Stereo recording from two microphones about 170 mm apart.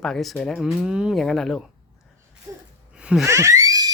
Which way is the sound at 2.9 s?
5° right (ahead or behind).